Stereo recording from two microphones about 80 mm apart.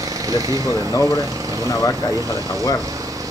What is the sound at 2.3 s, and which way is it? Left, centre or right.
Speech, right.